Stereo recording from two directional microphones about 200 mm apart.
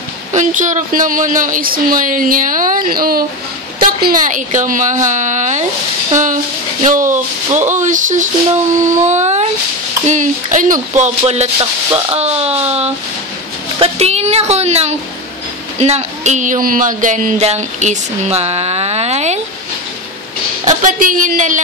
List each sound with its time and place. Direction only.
0.3 s speech: 40° right (ahead or behind)
20.6 s speech: 40° right (ahead or behind)